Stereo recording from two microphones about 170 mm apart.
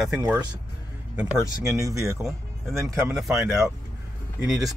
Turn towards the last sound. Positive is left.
turn(degrees=0)  # may be behind; listen again after turning